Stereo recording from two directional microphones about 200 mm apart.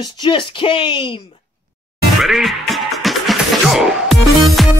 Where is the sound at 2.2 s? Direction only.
Centre (ahead or behind).